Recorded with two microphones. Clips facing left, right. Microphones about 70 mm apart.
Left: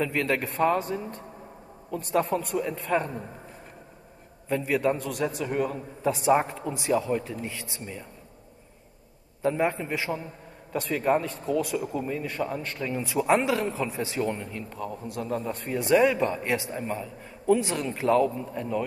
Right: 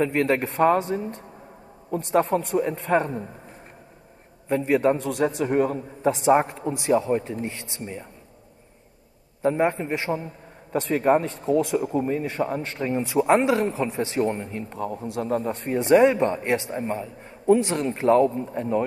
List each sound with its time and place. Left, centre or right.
0.0 s a man's voice: right
4.5 s a man's voice: right
9.4 s a man's voice: right